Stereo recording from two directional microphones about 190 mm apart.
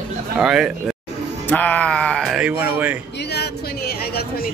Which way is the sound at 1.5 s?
10° left (ahead or behind).